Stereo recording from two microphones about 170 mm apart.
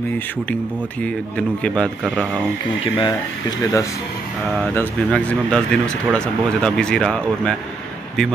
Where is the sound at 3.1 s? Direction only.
20° left (ahead or behind).